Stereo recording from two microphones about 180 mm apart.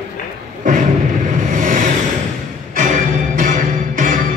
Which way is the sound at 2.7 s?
50° right (ahead or behind).